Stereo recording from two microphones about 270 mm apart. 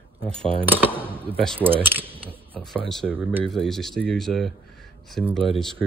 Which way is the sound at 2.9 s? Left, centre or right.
Centre.